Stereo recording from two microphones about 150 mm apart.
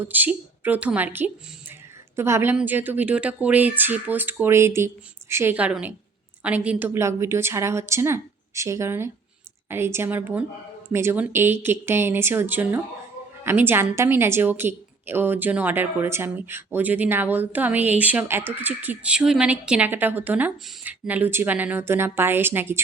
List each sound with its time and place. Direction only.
0.1 s a woman's voice: 10° right (ahead or behind)